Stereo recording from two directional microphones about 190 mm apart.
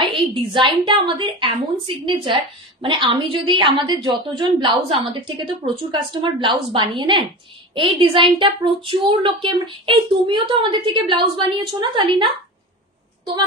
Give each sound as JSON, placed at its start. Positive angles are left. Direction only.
{"t": 0.0, "sound": "a woman's voice", "side_deg": -25}